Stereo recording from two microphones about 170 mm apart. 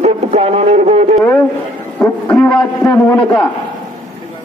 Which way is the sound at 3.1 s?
5° left (ahead or behind).